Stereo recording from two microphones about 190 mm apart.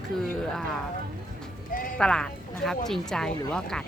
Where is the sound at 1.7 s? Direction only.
45° left (ahead or behind).